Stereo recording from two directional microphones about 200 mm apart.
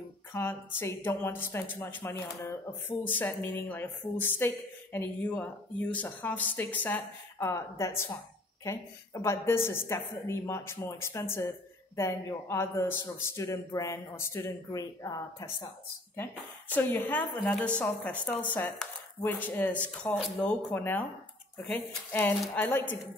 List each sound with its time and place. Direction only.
0.3 s a woman's voice: 10° left (ahead or behind)